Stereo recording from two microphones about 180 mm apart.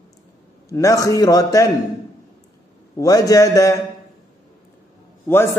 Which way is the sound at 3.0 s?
20° left (ahead or behind).